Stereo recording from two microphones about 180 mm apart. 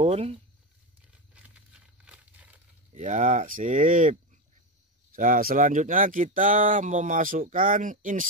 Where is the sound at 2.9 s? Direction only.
40° right (ahead or behind).